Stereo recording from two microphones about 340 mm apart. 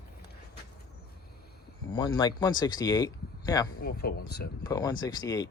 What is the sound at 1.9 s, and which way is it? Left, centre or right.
Speech, centre.